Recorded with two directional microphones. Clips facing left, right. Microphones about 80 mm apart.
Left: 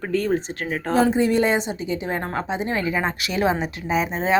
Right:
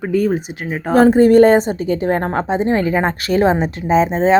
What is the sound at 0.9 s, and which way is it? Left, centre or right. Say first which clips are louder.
A woman's voice: right 9 dB; right.